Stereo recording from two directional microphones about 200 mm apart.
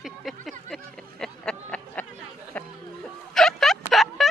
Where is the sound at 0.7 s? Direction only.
5° left (ahead or behind).